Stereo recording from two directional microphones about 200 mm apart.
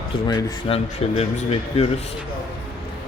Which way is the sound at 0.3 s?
30° left (ahead or behind).